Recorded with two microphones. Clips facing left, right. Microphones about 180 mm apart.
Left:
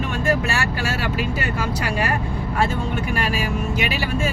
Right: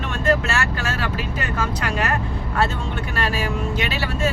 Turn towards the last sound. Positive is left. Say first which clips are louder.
# left 1 dB
turn(degrees=15)  # may be behind; listen again after turning